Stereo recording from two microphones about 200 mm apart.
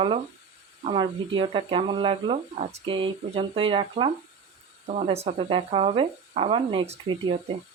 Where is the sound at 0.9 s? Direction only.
25° right (ahead or behind).